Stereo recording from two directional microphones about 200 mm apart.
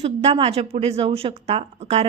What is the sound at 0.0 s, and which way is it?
A woman's voice, 30° right (ahead or behind).